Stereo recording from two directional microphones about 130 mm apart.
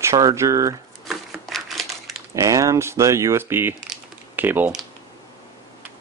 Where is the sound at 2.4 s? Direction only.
25° right (ahead or behind).